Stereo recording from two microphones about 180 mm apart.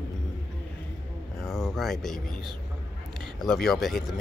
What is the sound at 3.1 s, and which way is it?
Speech, centre (ahead or behind).